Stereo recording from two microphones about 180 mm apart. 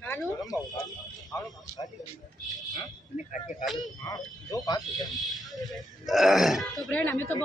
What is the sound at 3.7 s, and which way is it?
Speech, 20° left (ahead or behind).